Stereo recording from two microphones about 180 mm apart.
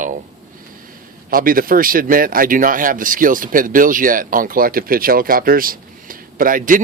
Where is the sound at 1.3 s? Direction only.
50° right (ahead or behind).